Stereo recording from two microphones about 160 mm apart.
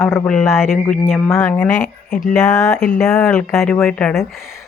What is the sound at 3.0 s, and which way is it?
Speech, 5° left (ahead or behind).